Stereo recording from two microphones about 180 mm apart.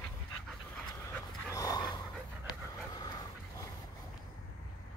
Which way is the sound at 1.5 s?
20° left (ahead or behind).